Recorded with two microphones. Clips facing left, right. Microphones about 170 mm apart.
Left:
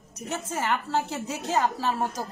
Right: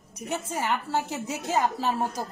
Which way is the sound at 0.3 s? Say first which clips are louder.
Even; 10° right (ahead or behind).